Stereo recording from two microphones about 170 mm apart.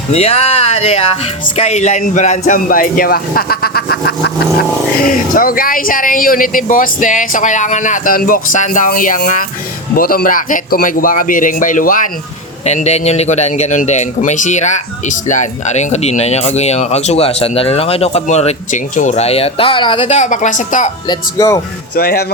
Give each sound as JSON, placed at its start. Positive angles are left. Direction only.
{"t": 0.1, "sound": "speech", "side_deg": 35}
{"t": 5.0, "sound": "speech", "side_deg": 55}
{"t": 12.6, "sound": "a man's voice", "side_deg": 40}
{"t": 21.1, "sound": "speech", "side_deg": 20}
{"t": 21.9, "sound": "speech", "side_deg": 65}